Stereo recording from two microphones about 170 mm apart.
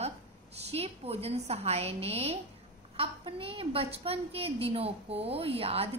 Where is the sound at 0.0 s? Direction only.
40° right (ahead or behind).